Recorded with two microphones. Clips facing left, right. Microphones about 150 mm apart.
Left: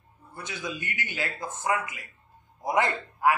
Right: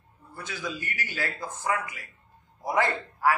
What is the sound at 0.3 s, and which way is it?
A man's voice, 20° left (ahead or behind).